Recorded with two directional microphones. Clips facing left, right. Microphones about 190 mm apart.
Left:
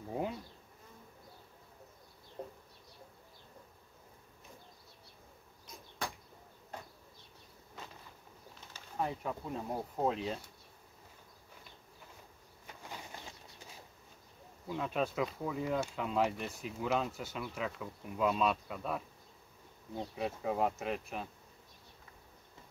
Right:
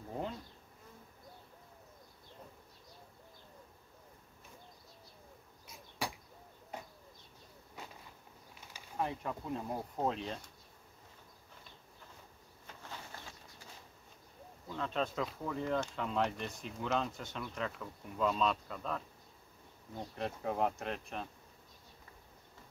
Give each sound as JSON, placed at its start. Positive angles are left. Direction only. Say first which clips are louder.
{"t": 0.1, "sound": "bee", "louder": "left 3 dB", "side_deg": 10}
{"t": 2.4, "sound": "bird", "louder": "left 10 dB", "side_deg": 60}
{"t": 6.0, "sound": "bird", "louder": "right 1 dB", "side_deg": -10}
{"t": 8.9, "sound": "speech", "louder": "left 1 dB", "side_deg": 0}
{"t": 12.8, "sound": "a sound", "louder": "left 2 dB", "side_deg": 15}
{"t": 14.7, "sound": "speech", "louder": "left 2 dB", "side_deg": 10}
{"t": 20.2, "sound": "speech", "louder": "left 1 dB", "side_deg": 5}